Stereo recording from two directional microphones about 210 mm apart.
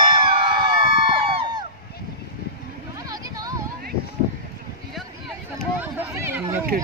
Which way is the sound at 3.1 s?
15° right (ahead or behind).